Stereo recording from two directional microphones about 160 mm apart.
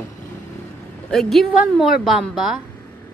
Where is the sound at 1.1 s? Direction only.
5° left (ahead or behind).